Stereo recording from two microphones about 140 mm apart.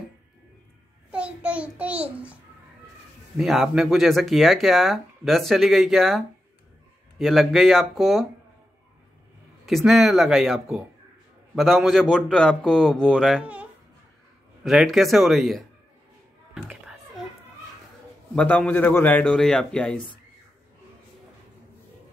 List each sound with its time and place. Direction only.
1.1 s child singing: 10° right (ahead or behind)
3.3 s speech: 5° right (ahead or behind)
9.7 s speech: centre (ahead or behind)
14.6 s speech: centre (ahead or behind)
16.5 s a sound: 5° right (ahead or behind)
18.3 s a man's voice: 10° left (ahead or behind)